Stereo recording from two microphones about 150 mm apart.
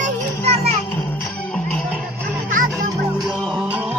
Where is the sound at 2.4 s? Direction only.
65° right (ahead or behind).